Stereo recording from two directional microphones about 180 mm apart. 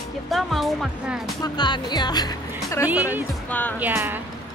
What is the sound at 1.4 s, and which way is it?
Speech, 25° left (ahead or behind).